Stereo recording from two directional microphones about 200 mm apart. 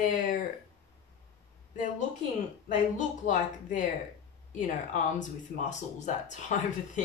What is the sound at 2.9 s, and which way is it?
Speech, 40° left (ahead or behind).